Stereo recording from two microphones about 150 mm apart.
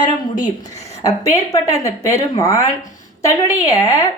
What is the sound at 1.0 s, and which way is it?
A woman's voice, 20° left (ahead or behind).